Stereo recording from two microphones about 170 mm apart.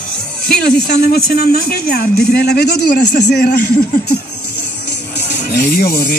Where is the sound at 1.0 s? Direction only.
65° left (ahead or behind).